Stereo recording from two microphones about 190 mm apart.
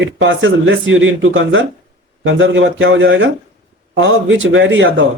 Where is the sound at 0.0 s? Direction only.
70° right (ahead or behind); by 1.6 s 90° right.